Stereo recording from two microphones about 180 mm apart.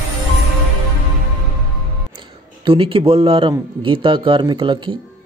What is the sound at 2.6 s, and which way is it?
Speech, 30° right (ahead or behind).